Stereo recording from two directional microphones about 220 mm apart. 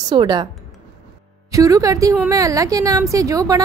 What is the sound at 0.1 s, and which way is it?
Speech, 20° right (ahead or behind).